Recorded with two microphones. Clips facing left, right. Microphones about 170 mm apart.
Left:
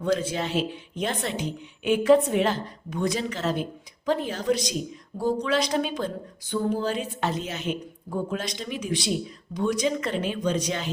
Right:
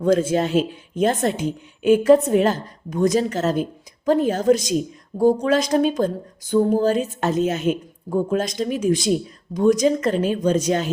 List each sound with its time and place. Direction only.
0.0 s a woman's voice: 45° right (ahead or behind)